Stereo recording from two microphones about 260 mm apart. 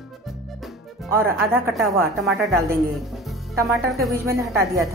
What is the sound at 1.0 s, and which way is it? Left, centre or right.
Speech, centre.